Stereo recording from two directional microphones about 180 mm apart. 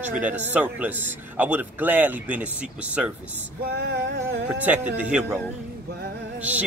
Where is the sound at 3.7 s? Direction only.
70° right (ahead or behind).